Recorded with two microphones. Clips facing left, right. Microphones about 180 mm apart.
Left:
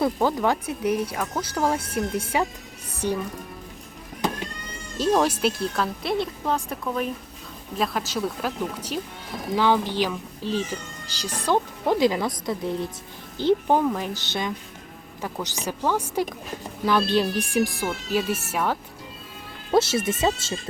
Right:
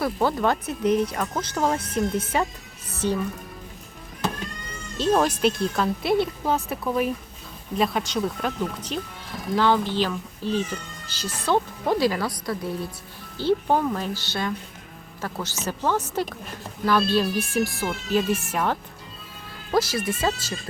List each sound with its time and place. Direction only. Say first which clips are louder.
0.0 s speech: left 1 dB; 15° left (ahead or behind)
2.9 s music: right 1 dB; 15° left (ahead or behind)
5.2 s a woman's voice: right 1 dB; 5° left (ahead or behind)
19.7 s speech: left 2 dB; 25° left (ahead or behind)